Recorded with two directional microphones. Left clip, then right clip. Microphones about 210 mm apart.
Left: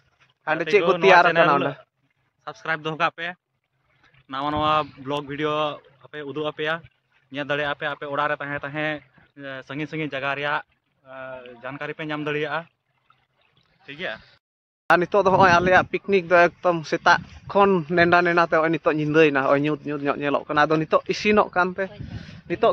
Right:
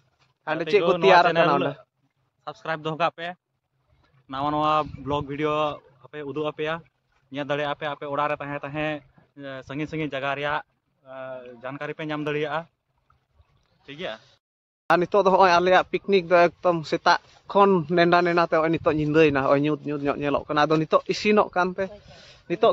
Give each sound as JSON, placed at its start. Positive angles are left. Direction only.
{"t": 0.4, "sound": "a sound", "side_deg": 15}
{"t": 1.0, "sound": "a man's voice", "side_deg": 15}
{"t": 2.4, "sound": "speech", "side_deg": -15}
{"t": 13.8, "sound": "speech", "side_deg": -10}
{"t": 14.9, "sound": "speech", "side_deg": 5}